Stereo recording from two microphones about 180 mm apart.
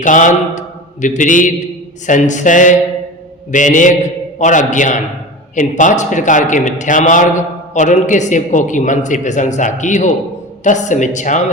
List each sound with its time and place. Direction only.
0.0 s a man's voice: 45° left (ahead or behind)